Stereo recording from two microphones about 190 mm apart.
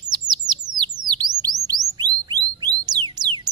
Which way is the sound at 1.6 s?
20° right (ahead or behind).